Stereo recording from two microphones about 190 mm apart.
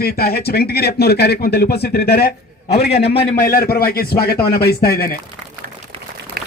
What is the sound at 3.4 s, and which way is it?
Speech, 50° left (ahead or behind).